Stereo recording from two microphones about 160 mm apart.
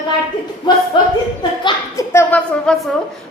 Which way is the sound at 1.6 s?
20° left (ahead or behind).